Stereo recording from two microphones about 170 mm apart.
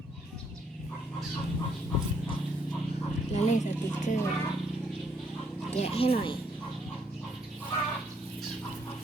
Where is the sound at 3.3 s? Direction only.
45° left (ahead or behind).